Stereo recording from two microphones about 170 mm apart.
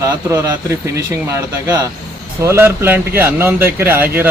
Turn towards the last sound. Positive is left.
turn(degrees=-10)  # may be behind; listen again after turning